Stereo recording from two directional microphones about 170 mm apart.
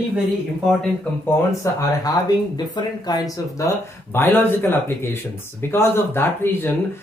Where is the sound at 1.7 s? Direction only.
20° left (ahead or behind).